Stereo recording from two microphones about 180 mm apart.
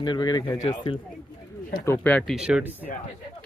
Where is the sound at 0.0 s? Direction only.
25° left (ahead or behind).